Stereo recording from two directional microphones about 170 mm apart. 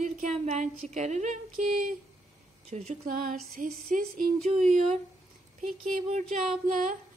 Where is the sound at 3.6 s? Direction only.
55° right (ahead or behind).